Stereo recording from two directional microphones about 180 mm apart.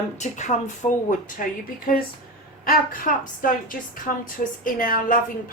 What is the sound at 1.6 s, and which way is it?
A woman's voice, 50° left (ahead or behind).